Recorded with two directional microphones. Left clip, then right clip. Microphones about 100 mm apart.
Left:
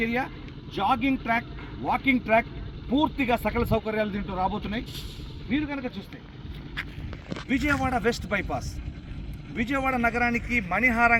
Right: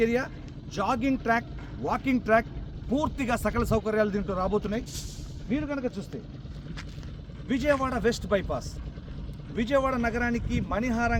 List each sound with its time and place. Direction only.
0.7 s speech: 80° right
2.9 s speech: 90° right
7.4 s speech: 40° right (ahead or behind)
9.6 s speech: 35° right (ahead or behind)